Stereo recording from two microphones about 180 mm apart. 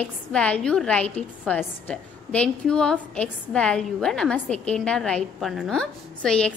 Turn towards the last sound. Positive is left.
turn(degrees=5)  # may be behind; listen again after turning